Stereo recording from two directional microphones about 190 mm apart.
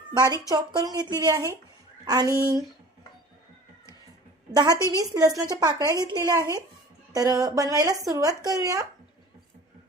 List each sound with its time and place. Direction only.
0.2 s a woman's voice: 20° right (ahead or behind)
4.5 s a woman's voice: 20° right (ahead or behind)